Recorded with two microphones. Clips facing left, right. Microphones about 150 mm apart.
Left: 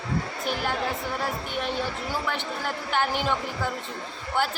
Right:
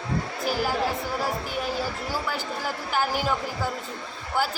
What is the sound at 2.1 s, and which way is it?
A man's voice, 5° right (ahead or behind).